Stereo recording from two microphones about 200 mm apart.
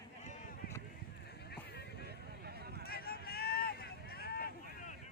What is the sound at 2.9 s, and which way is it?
Vehicle, 50° left (ahead or behind).